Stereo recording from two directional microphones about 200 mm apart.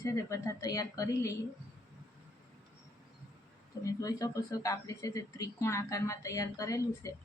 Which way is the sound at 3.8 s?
15° left (ahead or behind).